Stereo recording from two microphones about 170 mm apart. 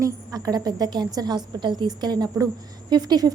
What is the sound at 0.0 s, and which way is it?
A woman's voice, 20° right (ahead or behind).